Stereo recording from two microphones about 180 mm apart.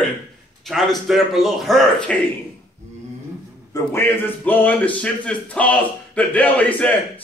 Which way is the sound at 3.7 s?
15° left (ahead or behind).